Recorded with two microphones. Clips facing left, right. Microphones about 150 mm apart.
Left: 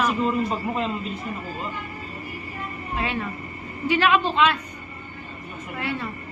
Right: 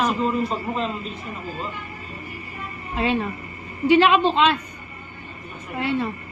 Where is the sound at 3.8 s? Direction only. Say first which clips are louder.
Right 5 dB; 25° right (ahead or behind).